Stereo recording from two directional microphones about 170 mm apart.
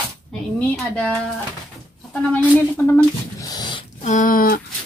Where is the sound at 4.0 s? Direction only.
45° left (ahead or behind).